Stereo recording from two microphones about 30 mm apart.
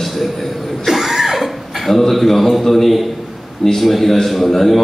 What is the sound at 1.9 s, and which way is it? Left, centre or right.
A man's voice, centre.